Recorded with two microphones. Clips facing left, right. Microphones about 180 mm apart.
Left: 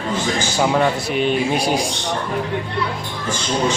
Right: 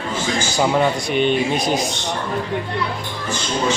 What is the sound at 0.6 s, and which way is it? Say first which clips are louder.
A man's voice: even; centre (ahead or behind).